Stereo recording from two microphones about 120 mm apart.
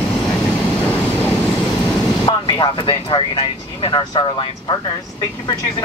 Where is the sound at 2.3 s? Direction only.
40° left (ahead or behind).